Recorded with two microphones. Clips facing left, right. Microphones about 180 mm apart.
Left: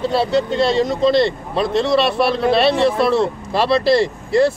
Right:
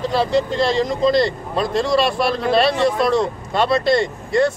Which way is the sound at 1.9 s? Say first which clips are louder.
Left 1 dB; centre (ahead or behind).